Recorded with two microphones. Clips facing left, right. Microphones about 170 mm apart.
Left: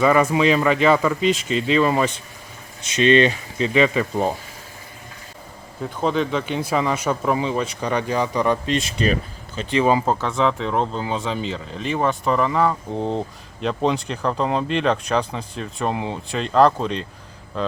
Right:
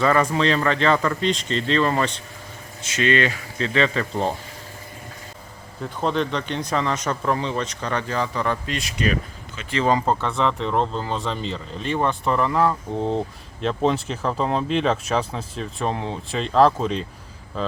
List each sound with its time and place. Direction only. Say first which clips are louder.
0.0 s speech: left 3 dB; 10° left (ahead or behind)
2.8 s speech: left 5 dB; 20° left (ahead or behind)
5.8 s speech: left 2 dB; centre (ahead or behind); by 9.1 s 30° left (ahead or behind)
9.7 s speech: left 2 dB; 10° left (ahead or behind)